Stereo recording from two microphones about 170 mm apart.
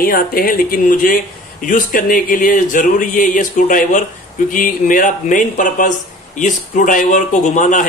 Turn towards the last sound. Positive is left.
turn(degrees=50)  # may be behind; listen again after turning